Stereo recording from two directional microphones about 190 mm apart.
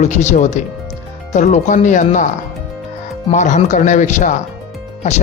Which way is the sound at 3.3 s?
40° left (ahead or behind).